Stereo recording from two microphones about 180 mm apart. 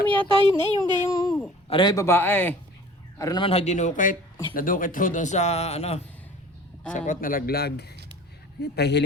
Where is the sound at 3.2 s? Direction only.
25° left (ahead or behind).